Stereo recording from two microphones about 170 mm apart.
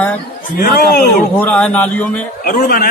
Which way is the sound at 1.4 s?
10° left (ahead or behind).